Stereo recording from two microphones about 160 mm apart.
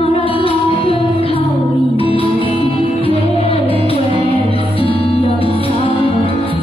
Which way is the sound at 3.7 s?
30° right (ahead or behind).